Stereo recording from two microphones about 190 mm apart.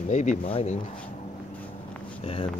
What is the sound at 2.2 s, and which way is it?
Speech, 30° left (ahead or behind).